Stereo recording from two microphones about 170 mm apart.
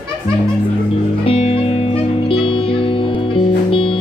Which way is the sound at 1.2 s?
35° left (ahead or behind).